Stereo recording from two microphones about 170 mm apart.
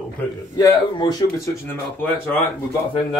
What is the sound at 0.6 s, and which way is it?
Speech, 25° left (ahead or behind).